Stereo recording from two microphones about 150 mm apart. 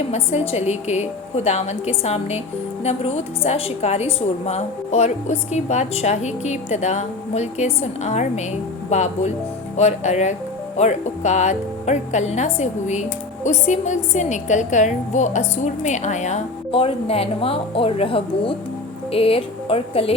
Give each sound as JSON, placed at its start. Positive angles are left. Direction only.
{"t": 0.1, "sound": "speech", "side_deg": 45}